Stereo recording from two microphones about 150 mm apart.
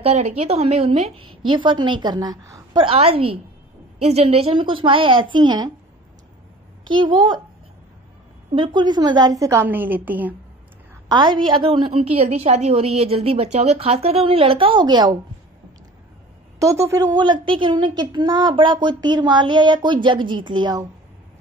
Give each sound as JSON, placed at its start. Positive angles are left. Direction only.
{"t": 0.0, "sound": "a woman's voice", "side_deg": -45}
{"t": 2.8, "sound": "a woman's voice", "side_deg": -40}
{"t": 6.9, "sound": "a woman's voice", "side_deg": -30}
{"t": 8.5, "sound": "a woman's voice", "side_deg": -30}
{"t": 11.1, "sound": "a woman's voice", "side_deg": -30}
{"t": 16.5, "sound": "a woman's voice", "side_deg": -20}